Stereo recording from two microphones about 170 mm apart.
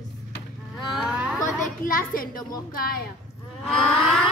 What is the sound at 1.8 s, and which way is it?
Speech, 55° left (ahead or behind).